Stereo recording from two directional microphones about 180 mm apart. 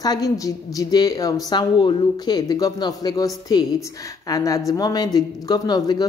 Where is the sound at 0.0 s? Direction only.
20° left (ahead or behind).